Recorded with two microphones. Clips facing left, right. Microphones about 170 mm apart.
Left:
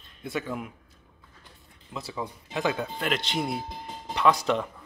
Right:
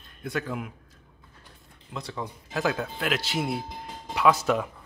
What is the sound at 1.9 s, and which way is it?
Speech, 5° left (ahead or behind).